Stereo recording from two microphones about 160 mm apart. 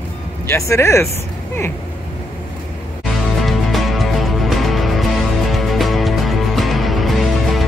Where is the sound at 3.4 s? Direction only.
Centre (ahead or behind).